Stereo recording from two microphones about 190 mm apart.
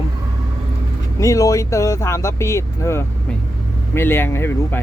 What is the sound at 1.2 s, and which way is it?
Speech, 15° left (ahead or behind).